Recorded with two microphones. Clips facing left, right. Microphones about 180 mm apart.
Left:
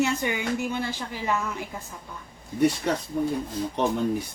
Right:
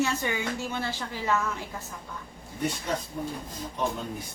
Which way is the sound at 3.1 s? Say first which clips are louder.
Left 8 dB; 55° left (ahead or behind).